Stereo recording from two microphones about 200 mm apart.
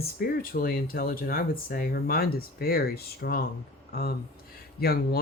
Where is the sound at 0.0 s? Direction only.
50° left (ahead or behind).